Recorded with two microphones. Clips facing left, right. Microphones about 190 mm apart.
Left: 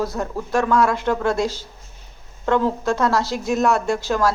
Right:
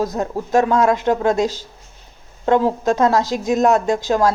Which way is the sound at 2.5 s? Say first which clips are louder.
Right 3 dB; 15° right (ahead or behind).